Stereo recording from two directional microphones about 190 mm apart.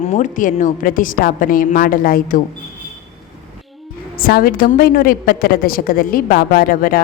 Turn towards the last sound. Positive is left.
turn(degrees=50)  # may be behind; listen again after turning